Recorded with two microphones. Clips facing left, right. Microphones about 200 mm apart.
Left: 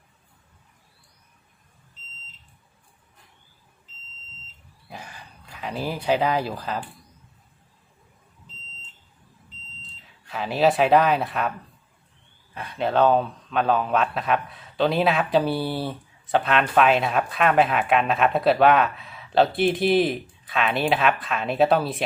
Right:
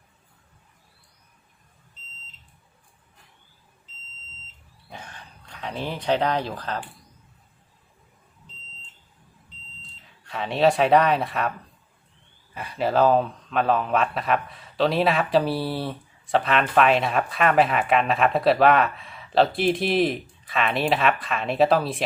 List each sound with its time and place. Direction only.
4.9 s speech: 5° left (ahead or behind)
9.8 s speech: centre (ahead or behind)
12.5 s speech: centre (ahead or behind)